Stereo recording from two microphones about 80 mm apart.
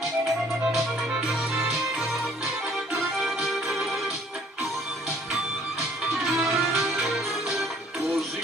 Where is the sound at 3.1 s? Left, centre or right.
Centre.